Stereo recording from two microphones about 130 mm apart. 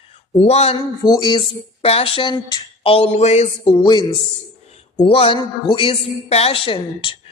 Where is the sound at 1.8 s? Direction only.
50° left (ahead or behind).